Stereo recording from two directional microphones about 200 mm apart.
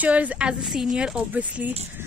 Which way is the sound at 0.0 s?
5° right (ahead or behind).